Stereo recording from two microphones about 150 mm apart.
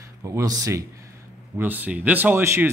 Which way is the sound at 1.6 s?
10° right (ahead or behind).